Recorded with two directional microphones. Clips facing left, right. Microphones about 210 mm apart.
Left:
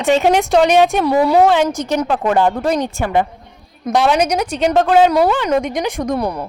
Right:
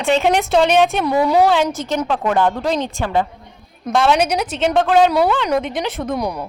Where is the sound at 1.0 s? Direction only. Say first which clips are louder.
Left 2 dB; 10° left (ahead or behind).